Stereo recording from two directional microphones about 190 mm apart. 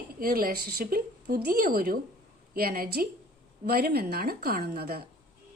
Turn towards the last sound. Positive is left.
turn(degrees=-55)  # may be behind; listen again after turning